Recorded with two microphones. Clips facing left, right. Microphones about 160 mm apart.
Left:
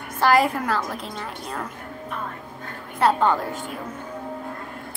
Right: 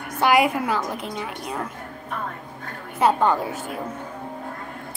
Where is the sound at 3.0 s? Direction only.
10° right (ahead or behind).